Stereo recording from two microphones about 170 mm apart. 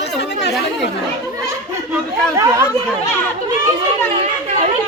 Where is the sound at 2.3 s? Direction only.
15° right (ahead or behind).